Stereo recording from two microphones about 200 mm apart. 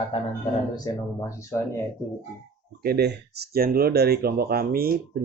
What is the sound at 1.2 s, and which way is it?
Speech, 15° left (ahead or behind).